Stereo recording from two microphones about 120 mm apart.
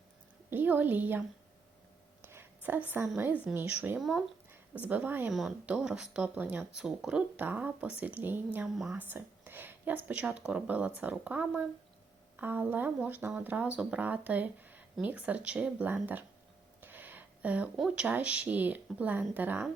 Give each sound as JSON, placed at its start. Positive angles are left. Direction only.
{"t": 0.5, "sound": "speech", "side_deg": -15}
{"t": 2.2, "sound": "a sound", "side_deg": -20}
{"t": 3.4, "sound": "speech", "side_deg": -15}
{"t": 5.3, "sound": "speech", "side_deg": 0}
{"t": 8.5, "sound": "a woman's voice", "side_deg": -5}
{"t": 9.0, "sound": "speech", "side_deg": -15}